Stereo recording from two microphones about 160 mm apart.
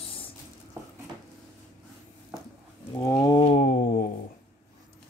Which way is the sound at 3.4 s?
50° left (ahead or behind).